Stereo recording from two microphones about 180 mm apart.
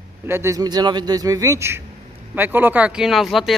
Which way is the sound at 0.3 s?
15° right (ahead or behind).